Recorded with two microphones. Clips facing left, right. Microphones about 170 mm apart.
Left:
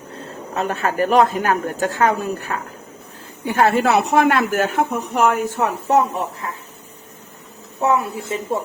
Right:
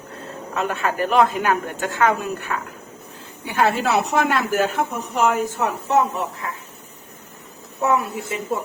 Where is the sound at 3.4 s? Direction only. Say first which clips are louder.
Left 4 dB; 45° left (ahead or behind).